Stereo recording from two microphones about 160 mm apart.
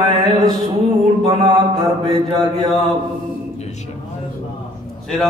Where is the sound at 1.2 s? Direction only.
30° right (ahead or behind).